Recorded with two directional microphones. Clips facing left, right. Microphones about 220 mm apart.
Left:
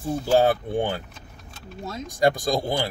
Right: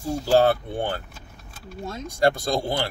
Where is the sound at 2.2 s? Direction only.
15° left (ahead or behind).